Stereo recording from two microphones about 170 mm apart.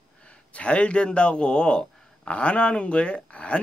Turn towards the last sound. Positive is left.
turn(degrees=5)  # may be behind; listen again after turning